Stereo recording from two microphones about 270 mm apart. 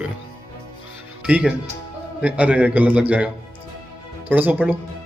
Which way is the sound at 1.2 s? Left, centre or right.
Centre.